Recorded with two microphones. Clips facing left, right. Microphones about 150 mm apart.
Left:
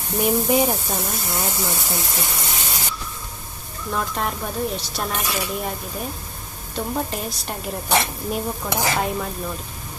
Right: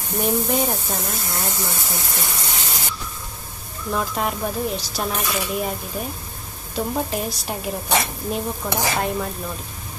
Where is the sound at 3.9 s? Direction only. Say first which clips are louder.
Right 1 dB; centre (ahead or behind).